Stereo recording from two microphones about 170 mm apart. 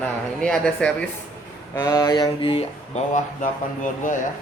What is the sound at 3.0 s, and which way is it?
Speech, 45° left (ahead or behind).